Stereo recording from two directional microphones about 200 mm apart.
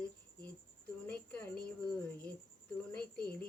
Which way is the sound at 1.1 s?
5° left (ahead or behind).